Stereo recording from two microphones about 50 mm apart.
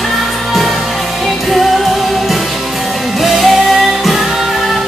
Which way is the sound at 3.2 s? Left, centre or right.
Centre.